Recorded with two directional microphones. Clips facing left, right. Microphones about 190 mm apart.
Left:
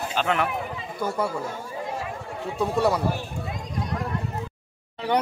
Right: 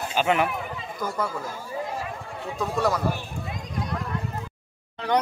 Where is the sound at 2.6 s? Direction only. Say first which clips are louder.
Left 2 dB; 30° left (ahead or behind).